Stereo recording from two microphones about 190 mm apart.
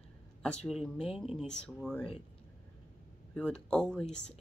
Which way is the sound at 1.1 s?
Centre (ahead or behind).